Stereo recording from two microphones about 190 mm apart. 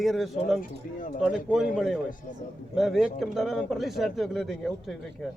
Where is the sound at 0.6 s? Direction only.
45° left (ahead or behind).